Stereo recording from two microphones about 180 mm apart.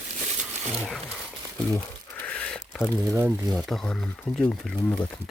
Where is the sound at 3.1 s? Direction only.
15° right (ahead or behind).